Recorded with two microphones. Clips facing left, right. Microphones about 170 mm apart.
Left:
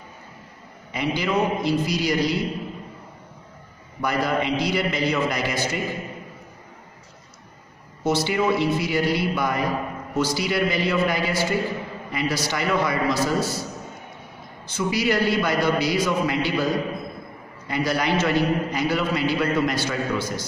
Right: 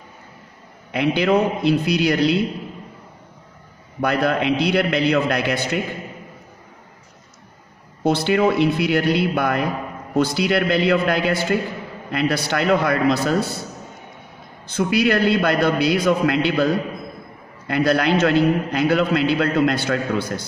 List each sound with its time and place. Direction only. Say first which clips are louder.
0.9 s a man's voice: right 6 dB; 65° right (ahead or behind)
4.0 s a man's voice: right 4 dB; 60° right (ahead or behind)
8.0 s a man's voice: right 4 dB; 60° right (ahead or behind)
14.8 s a man's voice: right 4 dB; 60° right (ahead or behind)